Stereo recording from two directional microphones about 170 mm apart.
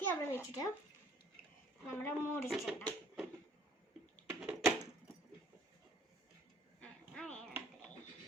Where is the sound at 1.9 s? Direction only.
15° left (ahead or behind).